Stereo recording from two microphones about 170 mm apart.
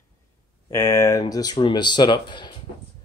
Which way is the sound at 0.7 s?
20° left (ahead or behind).